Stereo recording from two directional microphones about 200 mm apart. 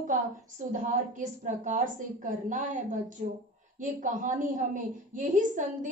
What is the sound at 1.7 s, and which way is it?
A woman's voice, 40° right (ahead or behind).